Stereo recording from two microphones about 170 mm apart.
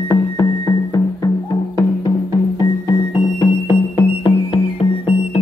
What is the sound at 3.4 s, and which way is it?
Music, 25° left (ahead or behind).